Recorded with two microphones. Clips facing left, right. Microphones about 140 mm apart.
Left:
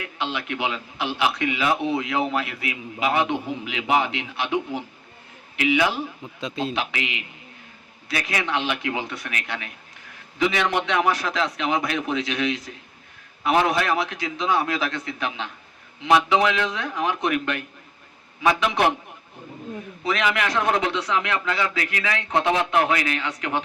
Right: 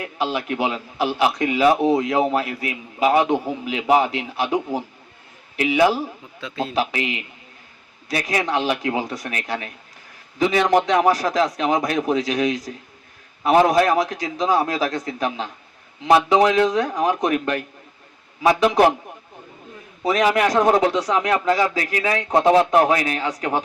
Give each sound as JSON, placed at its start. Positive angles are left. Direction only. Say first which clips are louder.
{"t": 0.0, "sound": "a man's voice", "louder": "right 5 dB", "side_deg": -40}
{"t": 6.4, "sound": "a man's voice", "louder": "even", "side_deg": 20}
{"t": 6.7, "sound": "a man's voice", "louder": "right 6 dB", "side_deg": -40}
{"t": 18.6, "sound": "a man's voice", "louder": "right 9 dB", "side_deg": -40}
{"t": 20.1, "sound": "a man's voice", "louder": "right 6 dB", "side_deg": -40}